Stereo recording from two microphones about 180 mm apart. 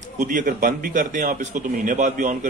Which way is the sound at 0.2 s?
45° right (ahead or behind).